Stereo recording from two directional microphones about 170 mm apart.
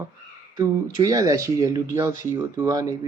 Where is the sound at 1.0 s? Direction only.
20° right (ahead or behind).